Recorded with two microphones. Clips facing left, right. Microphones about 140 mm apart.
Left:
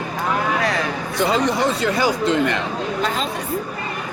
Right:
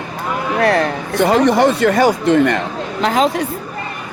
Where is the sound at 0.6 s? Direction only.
60° right (ahead or behind).